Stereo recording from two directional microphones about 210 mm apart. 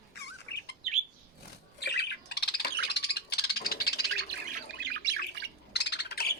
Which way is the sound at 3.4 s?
45° left (ahead or behind).